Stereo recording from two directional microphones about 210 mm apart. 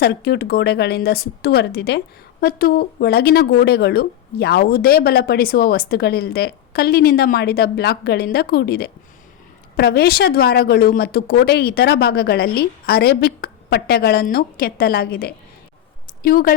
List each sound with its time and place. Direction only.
0.0 s speech: 50° left (ahead or behind)